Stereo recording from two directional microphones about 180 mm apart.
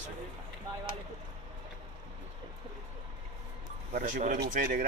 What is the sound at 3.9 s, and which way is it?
Speech, 40° right (ahead or behind).